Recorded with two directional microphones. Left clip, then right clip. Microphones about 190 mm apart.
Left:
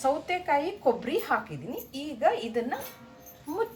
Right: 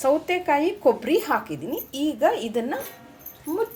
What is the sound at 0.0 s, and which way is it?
Speech, 40° right (ahead or behind).